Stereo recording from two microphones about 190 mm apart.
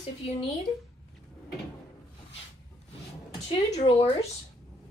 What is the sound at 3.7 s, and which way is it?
Speech, 30° left (ahead or behind).